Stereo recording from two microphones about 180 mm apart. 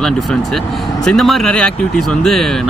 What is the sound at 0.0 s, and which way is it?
Speech, centre (ahead or behind).